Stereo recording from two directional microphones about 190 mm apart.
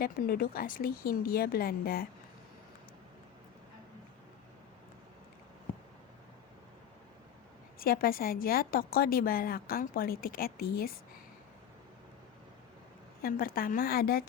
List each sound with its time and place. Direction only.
0.0 s a woman's voice: 55° left (ahead or behind)
7.8 s a woman's voice: 50° left (ahead or behind)
13.2 s a woman's voice: 50° left (ahead or behind)